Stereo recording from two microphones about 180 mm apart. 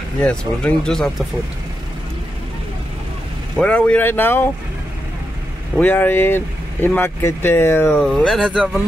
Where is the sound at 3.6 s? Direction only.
5° left (ahead or behind).